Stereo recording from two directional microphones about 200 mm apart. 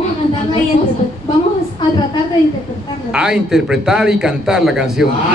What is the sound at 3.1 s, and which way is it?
A man's voice, 5° right (ahead or behind).